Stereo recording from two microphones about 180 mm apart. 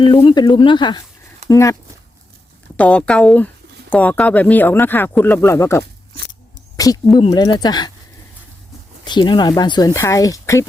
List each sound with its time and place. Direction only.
0.0 s speech: 30° left (ahead or behind)
2.7 s speech: 5° left (ahead or behind)
6.7 s a sound: 20° left (ahead or behind)
7.2 s speech: 20° left (ahead or behind)
9.0 s speech: 25° left (ahead or behind)